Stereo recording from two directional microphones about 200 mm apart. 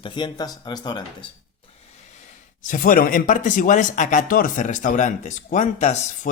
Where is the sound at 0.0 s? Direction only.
25° left (ahead or behind).